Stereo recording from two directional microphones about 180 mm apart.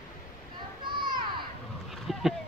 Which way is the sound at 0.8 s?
25° right (ahead or behind).